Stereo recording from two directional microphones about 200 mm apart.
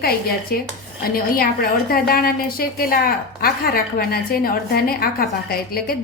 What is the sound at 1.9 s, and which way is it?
A woman's voice, 50° left (ahead or behind).